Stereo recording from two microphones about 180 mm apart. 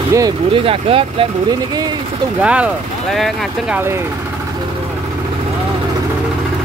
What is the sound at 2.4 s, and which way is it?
Speech, 5° right (ahead or behind).